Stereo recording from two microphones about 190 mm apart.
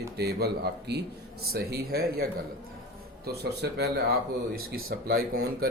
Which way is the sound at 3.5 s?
60° right (ahead or behind).